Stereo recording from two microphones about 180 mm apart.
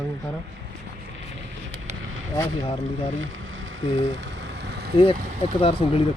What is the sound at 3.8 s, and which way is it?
Speech, 30° left (ahead or behind).